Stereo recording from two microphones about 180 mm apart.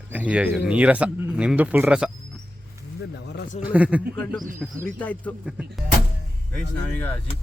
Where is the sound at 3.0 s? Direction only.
75° left (ahead or behind).